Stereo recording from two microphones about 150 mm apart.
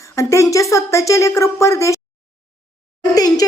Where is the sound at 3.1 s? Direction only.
25° left (ahead or behind).